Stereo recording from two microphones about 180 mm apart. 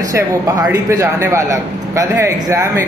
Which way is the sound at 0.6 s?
15° right (ahead or behind).